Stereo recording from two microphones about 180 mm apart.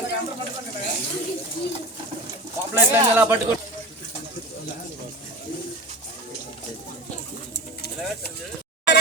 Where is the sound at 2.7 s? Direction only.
10° right (ahead or behind).